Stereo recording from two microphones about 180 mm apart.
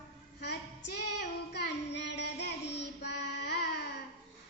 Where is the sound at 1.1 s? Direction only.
70° left (ahead or behind).